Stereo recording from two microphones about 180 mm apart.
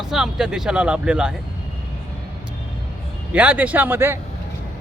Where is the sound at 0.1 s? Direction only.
5° right (ahead or behind).